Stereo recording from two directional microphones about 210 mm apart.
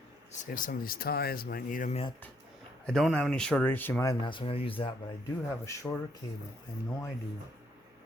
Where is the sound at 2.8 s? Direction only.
5° left (ahead or behind); by 4.9 s 25° left (ahead or behind).